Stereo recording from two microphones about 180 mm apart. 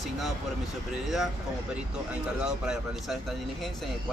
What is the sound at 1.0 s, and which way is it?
Speech, centre (ahead or behind).